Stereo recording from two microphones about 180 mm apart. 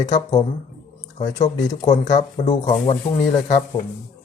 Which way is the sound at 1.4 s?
20° left (ahead or behind).